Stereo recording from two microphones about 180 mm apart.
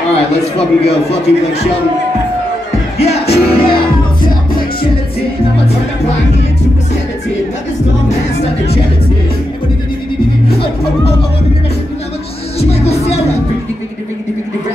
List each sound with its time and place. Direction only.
0.1 s a man's voice: 35° left (ahead or behind)
3.0 s music: 35° left (ahead or behind)
12.5 s a man's voice: 35° left (ahead or behind)